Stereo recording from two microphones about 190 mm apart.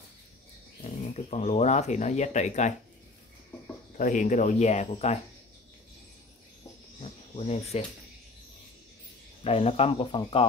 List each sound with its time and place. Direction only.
0.8 s speech: 35° left (ahead or behind)
4.0 s speech: 40° left (ahead or behind)
7.0 s cricket: 30° left (ahead or behind)
9.4 s speech: 30° left (ahead or behind)